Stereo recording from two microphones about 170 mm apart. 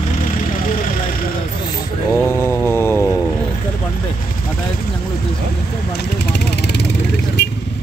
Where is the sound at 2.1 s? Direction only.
15° left (ahead or behind).